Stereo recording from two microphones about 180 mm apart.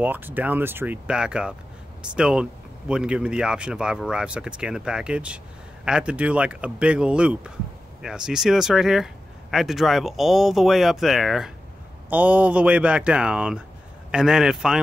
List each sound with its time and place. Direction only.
0.0 s speech: 10° right (ahead or behind)